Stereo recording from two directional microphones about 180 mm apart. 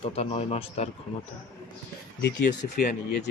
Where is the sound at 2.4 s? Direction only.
55° left (ahead or behind).